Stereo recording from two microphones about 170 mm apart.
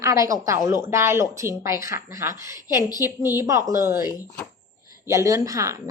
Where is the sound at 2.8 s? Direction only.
20° left (ahead or behind).